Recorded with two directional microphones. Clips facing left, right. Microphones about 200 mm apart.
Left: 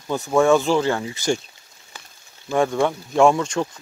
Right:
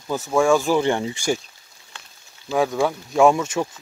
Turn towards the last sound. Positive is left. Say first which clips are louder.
# even
turn(degrees=-5)  # may be behind; listen again after turning